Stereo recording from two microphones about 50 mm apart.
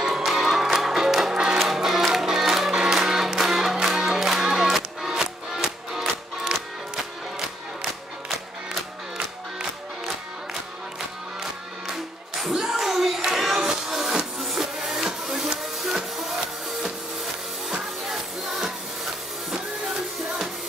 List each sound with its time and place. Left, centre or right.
0.0 s music: centre
1.6 s music: centre
11.9 s music: centre